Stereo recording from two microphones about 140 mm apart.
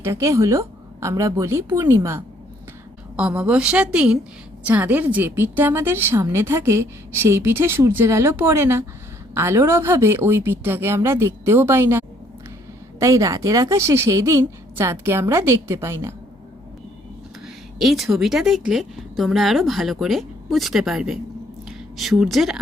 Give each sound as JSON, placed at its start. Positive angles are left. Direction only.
{"t": 0.0, "sound": "a woman's voice", "side_deg": -20}
{"t": 3.2, "sound": "a woman's voice", "side_deg": -10}
{"t": 17.4, "sound": "a woman's voice", "side_deg": 0}